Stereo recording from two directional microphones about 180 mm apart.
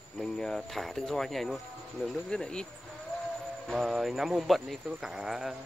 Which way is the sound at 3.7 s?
Centre (ahead or behind).